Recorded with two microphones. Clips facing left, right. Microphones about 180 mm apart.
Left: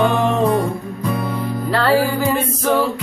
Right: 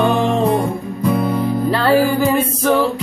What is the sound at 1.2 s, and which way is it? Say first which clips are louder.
Music: right 5 dB; 15° right (ahead or behind).